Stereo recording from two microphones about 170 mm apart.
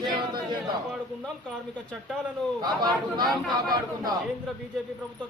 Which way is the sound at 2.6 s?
25° right (ahead or behind).